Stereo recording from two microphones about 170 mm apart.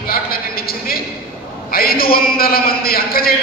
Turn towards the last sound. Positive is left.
turn(degrees=60)  # may be behind; listen again after turning